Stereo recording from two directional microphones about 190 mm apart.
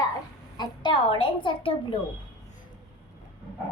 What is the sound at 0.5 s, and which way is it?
A woman's voice, 20° left (ahead or behind).